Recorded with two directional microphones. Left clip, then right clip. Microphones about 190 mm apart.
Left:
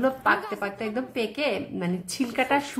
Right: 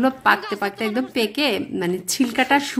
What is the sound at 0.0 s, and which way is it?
A woman's voice, 25° right (ahead or behind).